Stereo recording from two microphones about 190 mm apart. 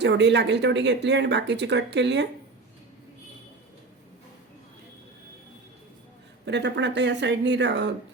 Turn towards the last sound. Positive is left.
turn(degrees=-65)  # may be behind; listen again after turning